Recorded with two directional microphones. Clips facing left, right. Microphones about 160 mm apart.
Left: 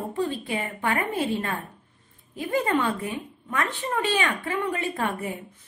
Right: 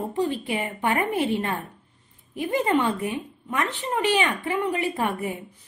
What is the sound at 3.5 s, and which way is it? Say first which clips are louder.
A woman's voice: right 1 dB; 15° right (ahead or behind).